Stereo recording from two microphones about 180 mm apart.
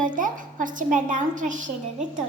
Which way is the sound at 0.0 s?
45° right (ahead or behind).